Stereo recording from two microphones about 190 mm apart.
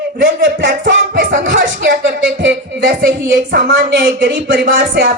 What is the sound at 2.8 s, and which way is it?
Speech, 50° right (ahead or behind).